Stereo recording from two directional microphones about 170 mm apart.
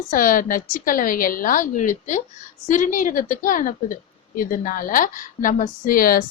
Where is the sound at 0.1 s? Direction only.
55° left (ahead or behind).